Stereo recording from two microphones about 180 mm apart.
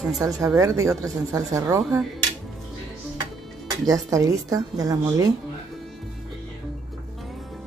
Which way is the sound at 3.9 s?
20° right (ahead or behind).